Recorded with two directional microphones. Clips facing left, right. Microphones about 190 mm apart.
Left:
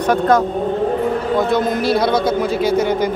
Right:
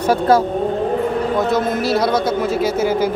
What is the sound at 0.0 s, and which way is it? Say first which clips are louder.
Speech: even; 5° right (ahead or behind).